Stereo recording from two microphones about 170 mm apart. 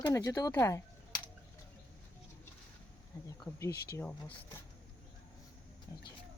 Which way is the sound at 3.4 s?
15° left (ahead or behind).